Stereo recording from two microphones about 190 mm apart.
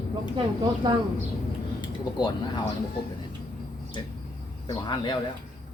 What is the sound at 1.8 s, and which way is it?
Speech, 25° left (ahead or behind).